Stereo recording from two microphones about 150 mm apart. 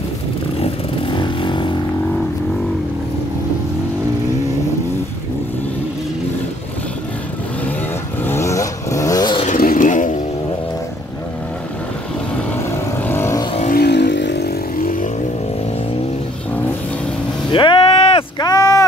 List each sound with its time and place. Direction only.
0.6 s vehicle: 35° left (ahead or behind)
8.2 s vehicle: 15° left (ahead or behind)
9.6 s vehicle: 65° left (ahead or behind)
12.4 s vehicle: 15° left (ahead or behind)
13.7 s vehicle: 90° left; by 15.0 s 65° left (ahead or behind)
17.5 s a sound: 35° left (ahead or behind)